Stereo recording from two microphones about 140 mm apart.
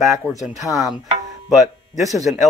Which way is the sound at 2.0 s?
25° right (ahead or behind).